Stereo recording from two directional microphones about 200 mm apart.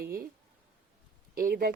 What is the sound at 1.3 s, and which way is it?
Speech, 50° right (ahead or behind).